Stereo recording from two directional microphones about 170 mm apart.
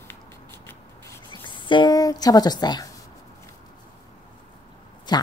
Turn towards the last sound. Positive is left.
turn(degrees=25)  # may be behind; listen again after turning